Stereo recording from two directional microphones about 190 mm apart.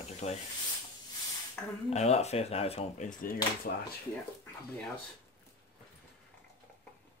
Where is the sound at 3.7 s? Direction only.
50° left (ahead or behind).